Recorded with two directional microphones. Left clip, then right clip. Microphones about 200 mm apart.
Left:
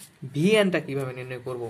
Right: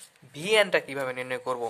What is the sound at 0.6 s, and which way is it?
Speech, 25° right (ahead or behind).